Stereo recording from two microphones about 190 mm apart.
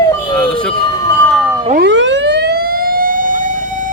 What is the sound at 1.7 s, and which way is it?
Emergency vehicle, 65° right (ahead or behind).